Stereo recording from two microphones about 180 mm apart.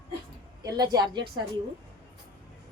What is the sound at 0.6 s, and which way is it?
Speech, 20° right (ahead or behind).